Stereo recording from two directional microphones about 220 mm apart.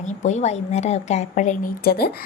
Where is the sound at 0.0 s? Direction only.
35° left (ahead or behind).